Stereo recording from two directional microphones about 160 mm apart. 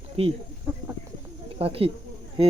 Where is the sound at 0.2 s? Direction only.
40° right (ahead or behind).